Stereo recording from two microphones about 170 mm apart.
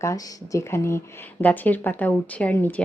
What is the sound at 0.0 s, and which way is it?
Speech, 15° left (ahead or behind).